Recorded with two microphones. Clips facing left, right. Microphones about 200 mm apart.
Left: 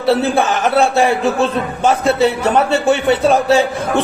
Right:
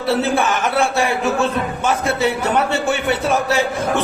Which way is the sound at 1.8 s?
35° left (ahead or behind).